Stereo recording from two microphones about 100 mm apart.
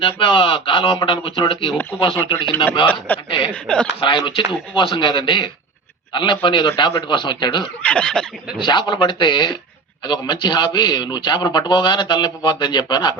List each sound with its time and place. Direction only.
0.0 s speech: 60° left (ahead or behind)
3.5 s speech: 10° left (ahead or behind)
4.0 s speech: 55° left (ahead or behind)
7.9 s speech: 10° left (ahead or behind)
8.6 s a man's voice: 50° left (ahead or behind)